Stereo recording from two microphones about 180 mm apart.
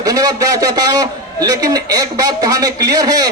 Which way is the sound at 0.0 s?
20° right (ahead or behind).